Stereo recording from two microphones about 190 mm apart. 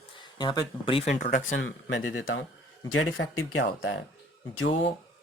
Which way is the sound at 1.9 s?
90° left.